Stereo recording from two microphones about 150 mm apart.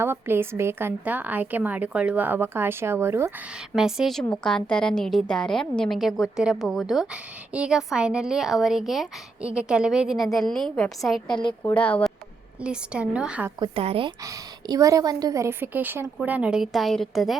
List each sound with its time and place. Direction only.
0.0 s a woman's voice: 15° right (ahead or behind)
3.8 s a woman's voice: 5° right (ahead or behind)
12.6 s a woman's voice: 5° right (ahead or behind)
13.6 s a woman's voice: 40° right (ahead or behind)
14.3 s a woman's voice: 25° right (ahead or behind); by 17.3 s centre (ahead or behind)